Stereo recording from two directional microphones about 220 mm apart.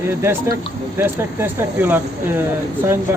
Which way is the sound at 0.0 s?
10° right (ahead or behind).